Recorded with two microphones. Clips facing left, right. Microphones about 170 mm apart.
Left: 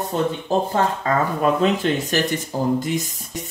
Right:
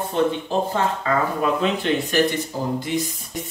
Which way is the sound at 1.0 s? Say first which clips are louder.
Left 2 dB; 40° left (ahead or behind).